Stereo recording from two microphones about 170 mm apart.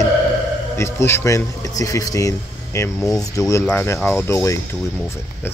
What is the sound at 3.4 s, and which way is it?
Speech, 20° left (ahead or behind).